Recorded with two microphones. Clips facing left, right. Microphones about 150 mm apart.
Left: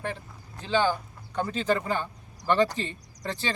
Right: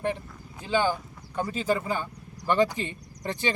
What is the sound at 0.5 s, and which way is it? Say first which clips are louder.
Speech: even; 10° right (ahead or behind).